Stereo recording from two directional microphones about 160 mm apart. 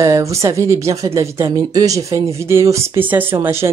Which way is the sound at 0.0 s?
20° right (ahead or behind).